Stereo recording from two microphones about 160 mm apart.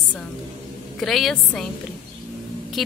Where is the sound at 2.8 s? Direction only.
Centre (ahead or behind).